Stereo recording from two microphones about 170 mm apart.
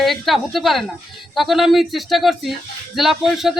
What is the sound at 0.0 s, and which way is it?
Speech, centre (ahead or behind).